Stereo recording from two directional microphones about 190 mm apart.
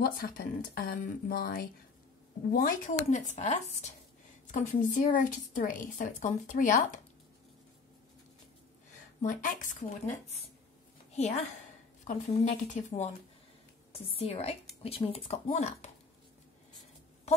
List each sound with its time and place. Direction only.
0.0 s a woman's voice: 50° left (ahead or behind)
9.2 s speech: 45° left (ahead or behind)
11.1 s a woman's voice: 35° left (ahead or behind)